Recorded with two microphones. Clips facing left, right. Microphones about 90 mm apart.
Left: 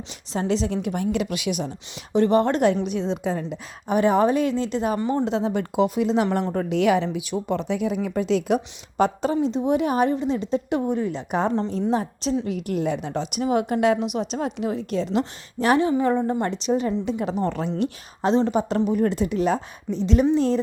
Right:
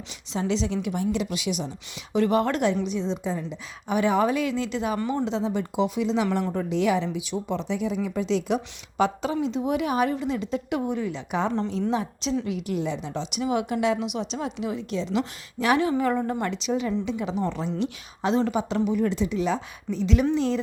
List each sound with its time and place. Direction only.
0.3 s a woman's voice: 50° left (ahead or behind)
2.1 s a woman's voice: 35° left (ahead or behind)
2.8 s a woman's voice: 60° left (ahead or behind)
3.8 s a woman's voice: 40° left (ahead or behind)
5.3 s a woman's voice: 60° left (ahead or behind)
15.2 s a woman's voice: 40° left (ahead or behind)
15.9 s a woman's voice: 25° left (ahead or behind)
16.4 s a woman's voice: 40° left (ahead or behind)
18.9 s a woman's voice: 45° left (ahead or behind)
19.9 s a woman's voice: 35° left (ahead or behind)